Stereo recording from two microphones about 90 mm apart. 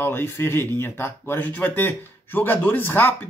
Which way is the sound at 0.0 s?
25° left (ahead or behind).